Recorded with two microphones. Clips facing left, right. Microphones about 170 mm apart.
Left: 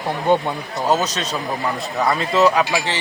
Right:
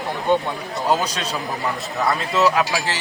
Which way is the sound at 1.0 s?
10° right (ahead or behind).